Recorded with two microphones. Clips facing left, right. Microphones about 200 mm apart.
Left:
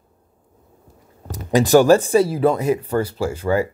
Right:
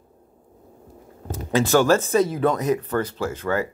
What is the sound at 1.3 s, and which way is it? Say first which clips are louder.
Speech: left 5 dB; 15° left (ahead or behind).